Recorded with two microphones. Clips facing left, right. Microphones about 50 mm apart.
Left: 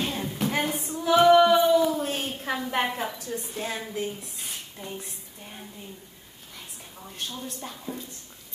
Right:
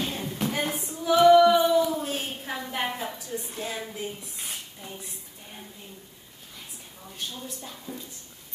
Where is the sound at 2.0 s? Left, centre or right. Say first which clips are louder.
Left 2 dB; left.